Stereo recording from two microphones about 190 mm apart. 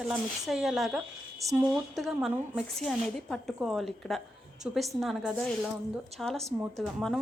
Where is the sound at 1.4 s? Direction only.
15° right (ahead or behind).